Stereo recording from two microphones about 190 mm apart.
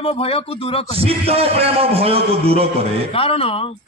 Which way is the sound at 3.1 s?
30° left (ahead or behind).